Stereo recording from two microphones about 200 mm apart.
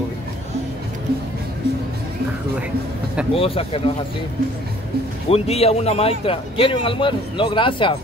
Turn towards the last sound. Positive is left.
turn(degrees=25)  # may be behind; listen again after turning